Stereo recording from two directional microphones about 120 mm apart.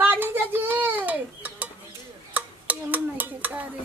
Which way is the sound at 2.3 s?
15° right (ahead or behind).